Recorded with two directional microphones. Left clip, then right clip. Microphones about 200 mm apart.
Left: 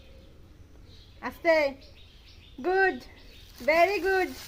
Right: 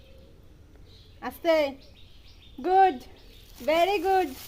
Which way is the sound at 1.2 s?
40° right (ahead or behind).